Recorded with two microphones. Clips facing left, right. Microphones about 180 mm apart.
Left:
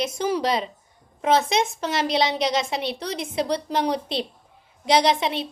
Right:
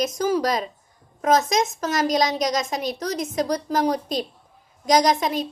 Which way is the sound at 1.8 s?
45° right (ahead or behind).